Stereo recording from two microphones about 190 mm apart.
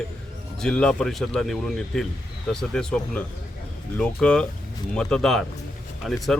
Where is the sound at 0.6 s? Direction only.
5° left (ahead or behind).